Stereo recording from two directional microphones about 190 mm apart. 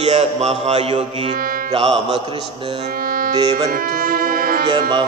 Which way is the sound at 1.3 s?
50° right (ahead or behind).